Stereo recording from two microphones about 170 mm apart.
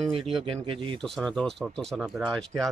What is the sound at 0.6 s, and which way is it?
Speech, 30° right (ahead or behind).